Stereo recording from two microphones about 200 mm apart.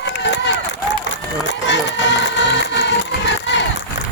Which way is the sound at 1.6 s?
65° left (ahead or behind).